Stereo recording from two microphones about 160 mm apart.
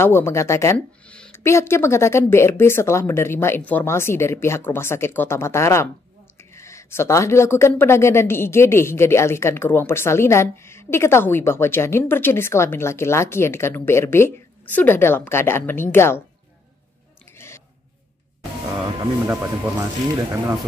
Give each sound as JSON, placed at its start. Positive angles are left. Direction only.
{"t": 0.0, "sound": "speech", "side_deg": 15}
{"t": 19.2, "sound": "speech", "side_deg": -15}